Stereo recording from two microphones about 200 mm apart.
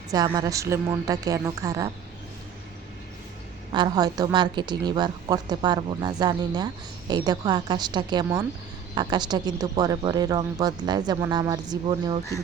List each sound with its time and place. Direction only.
0.3 s speech: 15° right (ahead or behind)
3.7 s a woman's voice: 20° right (ahead or behind)